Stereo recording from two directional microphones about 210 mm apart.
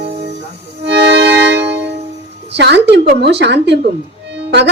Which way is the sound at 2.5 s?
55° right (ahead or behind).